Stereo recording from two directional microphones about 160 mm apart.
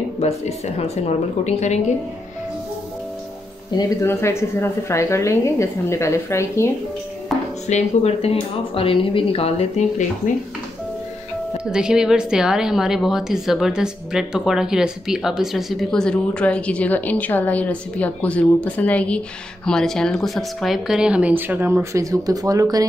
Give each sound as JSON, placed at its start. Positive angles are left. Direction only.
{"t": 0.2, "sound": "speech", "side_deg": 40}
{"t": 3.7, "sound": "a woman's voice", "side_deg": 15}
{"t": 7.6, "sound": "speech", "side_deg": 45}
{"t": 11.7, "sound": "speech", "side_deg": -5}